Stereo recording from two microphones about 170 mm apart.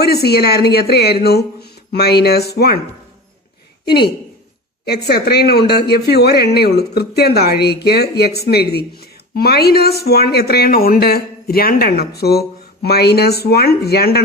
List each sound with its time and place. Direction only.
0.0 s speech: 70° left (ahead or behind)
3.8 s a woman's voice: 70° left (ahead or behind)